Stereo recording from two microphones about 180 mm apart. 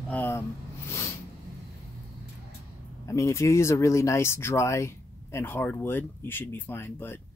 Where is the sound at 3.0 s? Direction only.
15° left (ahead or behind).